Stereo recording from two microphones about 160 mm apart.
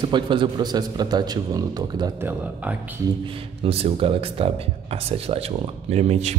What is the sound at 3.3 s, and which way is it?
Speech, 35° right (ahead or behind).